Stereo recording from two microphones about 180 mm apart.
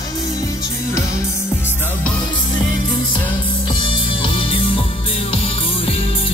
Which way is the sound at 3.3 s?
25° left (ahead or behind).